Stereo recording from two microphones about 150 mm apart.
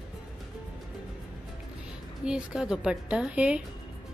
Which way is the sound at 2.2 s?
5° right (ahead or behind).